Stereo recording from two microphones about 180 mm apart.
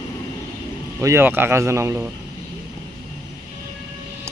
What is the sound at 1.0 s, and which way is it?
Speech, 15° right (ahead or behind).